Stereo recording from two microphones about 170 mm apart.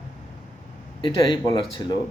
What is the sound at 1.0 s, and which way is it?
Speech, 25° left (ahead or behind).